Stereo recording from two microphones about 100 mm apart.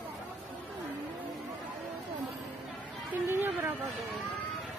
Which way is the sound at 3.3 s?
20° right (ahead or behind).